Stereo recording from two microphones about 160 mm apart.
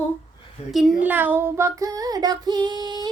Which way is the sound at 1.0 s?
10° right (ahead or behind).